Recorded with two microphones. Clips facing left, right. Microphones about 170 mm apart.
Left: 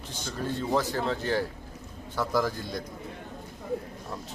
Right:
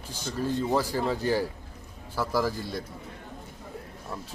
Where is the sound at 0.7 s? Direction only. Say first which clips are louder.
Right 1 dB; 10° right (ahead or behind).